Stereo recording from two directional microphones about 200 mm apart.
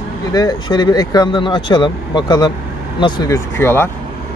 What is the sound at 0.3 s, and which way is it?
Speech, 20° left (ahead or behind).